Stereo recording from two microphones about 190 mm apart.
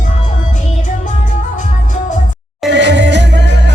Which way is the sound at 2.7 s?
65° right (ahead or behind).